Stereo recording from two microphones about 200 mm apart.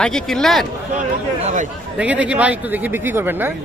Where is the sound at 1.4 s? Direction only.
35° right (ahead or behind).